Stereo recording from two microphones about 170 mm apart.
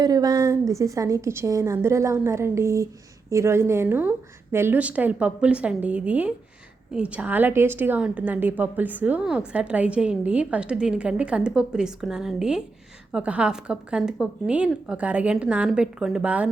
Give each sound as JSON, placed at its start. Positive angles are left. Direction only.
{"t": 0.0, "sound": "a woman's voice", "side_deg": -20}